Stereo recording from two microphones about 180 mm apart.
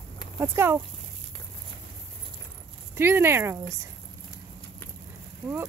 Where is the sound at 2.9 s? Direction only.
10° right (ahead or behind).